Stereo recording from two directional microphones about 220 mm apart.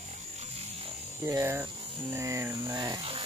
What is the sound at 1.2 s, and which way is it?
Speech, 15° right (ahead or behind).